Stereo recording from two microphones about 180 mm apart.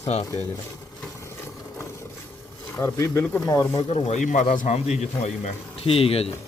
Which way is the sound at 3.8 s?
35° left (ahead or behind).